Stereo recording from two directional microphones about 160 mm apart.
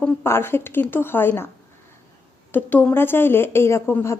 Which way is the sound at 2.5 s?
10° left (ahead or behind).